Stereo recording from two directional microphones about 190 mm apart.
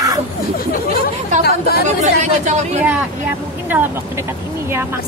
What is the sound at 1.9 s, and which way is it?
Speech, 35° right (ahead or behind).